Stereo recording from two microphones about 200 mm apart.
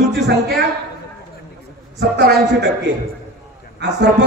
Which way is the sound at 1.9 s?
55° right (ahead or behind).